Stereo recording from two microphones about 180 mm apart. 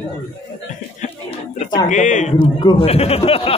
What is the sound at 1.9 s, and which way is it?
Speech, 45° left (ahead or behind).